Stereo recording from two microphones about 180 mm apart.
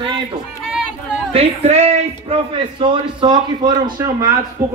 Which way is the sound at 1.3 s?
35° right (ahead or behind).